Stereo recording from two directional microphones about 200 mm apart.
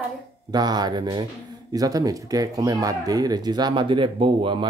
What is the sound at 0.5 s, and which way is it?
Speech, 20° right (ahead or behind).